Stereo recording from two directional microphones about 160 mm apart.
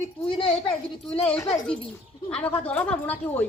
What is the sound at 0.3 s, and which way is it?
Speech, 30° left (ahead or behind).